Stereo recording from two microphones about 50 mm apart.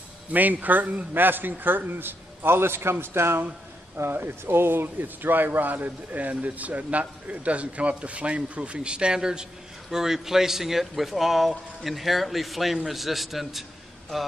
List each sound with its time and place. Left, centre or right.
0.3 s a man's voice: right; by 13.7 s centre